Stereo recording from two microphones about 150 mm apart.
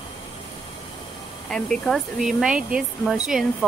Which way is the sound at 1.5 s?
5° left (ahead or behind).